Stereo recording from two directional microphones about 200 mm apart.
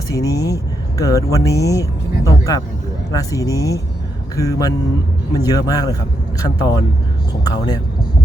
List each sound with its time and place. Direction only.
0.1 s speech: 15° left (ahead or behind)